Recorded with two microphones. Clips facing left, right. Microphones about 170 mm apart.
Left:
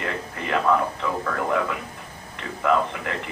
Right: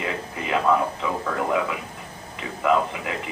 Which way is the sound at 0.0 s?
5° right (ahead or behind).